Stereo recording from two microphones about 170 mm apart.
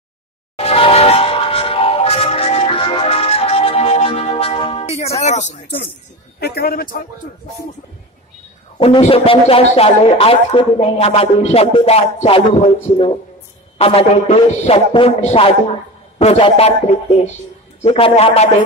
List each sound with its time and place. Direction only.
0.6 s music: 35° left (ahead or behind)
6.4 s speech: 65° left (ahead or behind)
8.7 s a man's voice: 35° left (ahead or behind)